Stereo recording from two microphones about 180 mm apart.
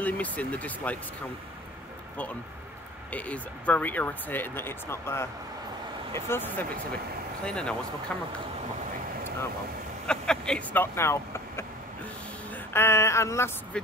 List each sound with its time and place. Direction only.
0.0 s speech: 10° left (ahead or behind)
3.1 s speech: 10° left (ahead or behind)
10.0 s speech: 5° left (ahead or behind)
12.7 s speech: 15° left (ahead or behind)